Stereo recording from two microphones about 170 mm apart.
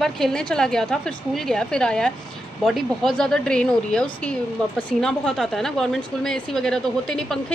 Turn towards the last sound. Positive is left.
turn(degrees=5)  # may be behind; listen again after turning